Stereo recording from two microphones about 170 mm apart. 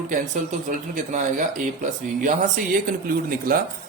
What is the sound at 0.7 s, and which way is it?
Speech, 50° right (ahead or behind).